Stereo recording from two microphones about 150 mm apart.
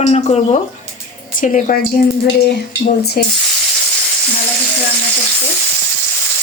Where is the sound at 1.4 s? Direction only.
60° left (ahead or behind).